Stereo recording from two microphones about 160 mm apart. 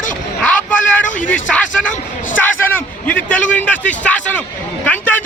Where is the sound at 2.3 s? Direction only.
10° left (ahead or behind).